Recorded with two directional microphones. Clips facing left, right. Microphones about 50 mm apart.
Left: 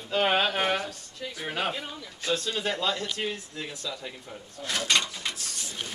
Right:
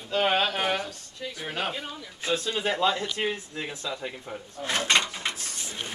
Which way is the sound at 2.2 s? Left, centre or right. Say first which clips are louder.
Right 1 dB; centre.